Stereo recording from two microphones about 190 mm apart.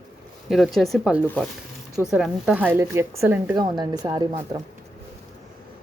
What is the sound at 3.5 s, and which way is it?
Speech, 20° right (ahead or behind).